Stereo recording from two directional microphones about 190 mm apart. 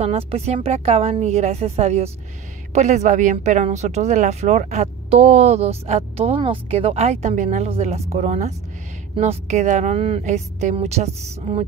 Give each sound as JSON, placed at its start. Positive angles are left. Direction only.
{"t": 0.3, "sound": "speech", "side_deg": -30}